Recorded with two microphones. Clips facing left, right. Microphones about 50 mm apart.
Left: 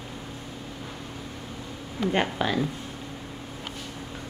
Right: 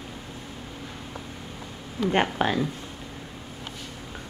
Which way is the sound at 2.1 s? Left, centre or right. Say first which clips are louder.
Right 3 dB; right.